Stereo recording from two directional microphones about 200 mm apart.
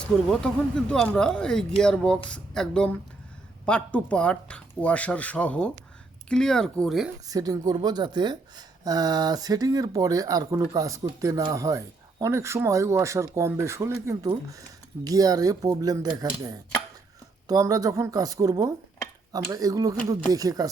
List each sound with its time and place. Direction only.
0.0 s speech: 5° left (ahead or behind)
7.3 s speech: 20° right (ahead or behind)
17.5 s speech: 20° right (ahead or behind)